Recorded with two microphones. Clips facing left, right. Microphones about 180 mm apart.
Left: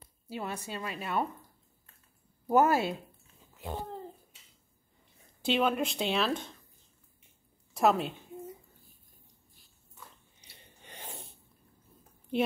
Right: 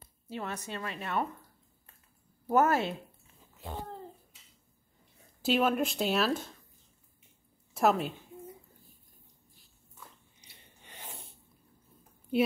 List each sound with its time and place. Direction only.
0.3 s a woman's voice: 10° left (ahead or behind)
2.5 s a woman's voice: 10° left (ahead or behind)
5.4 s speech: 5° right (ahead or behind)
7.7 s a woman's voice: centre (ahead or behind)